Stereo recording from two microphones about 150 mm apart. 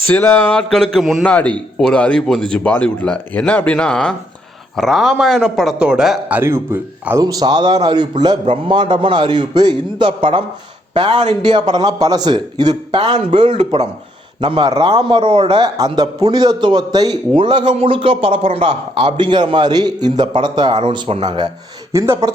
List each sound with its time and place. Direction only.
0.1 s a man's voice: 15° left (ahead or behind); by 7.2 s 15° right (ahead or behind)
7.2 s a man's voice: 25° right (ahead or behind)
21.9 s speech: 20° right (ahead or behind)